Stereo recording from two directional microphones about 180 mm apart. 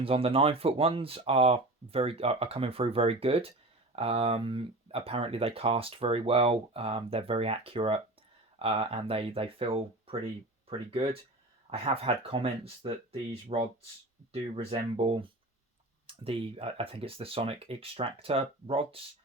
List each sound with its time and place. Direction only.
0.0 s speech: 30° right (ahead or behind)